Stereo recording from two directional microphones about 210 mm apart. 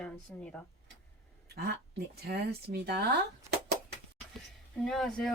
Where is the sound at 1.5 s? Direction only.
45° right (ahead or behind).